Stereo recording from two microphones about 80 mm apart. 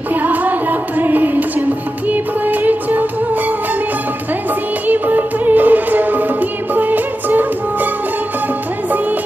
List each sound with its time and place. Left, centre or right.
0.1 s music: right
4.8 s music: right